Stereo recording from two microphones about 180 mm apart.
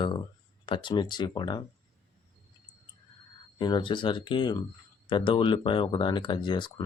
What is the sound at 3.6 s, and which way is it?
Speech, 25° left (ahead or behind).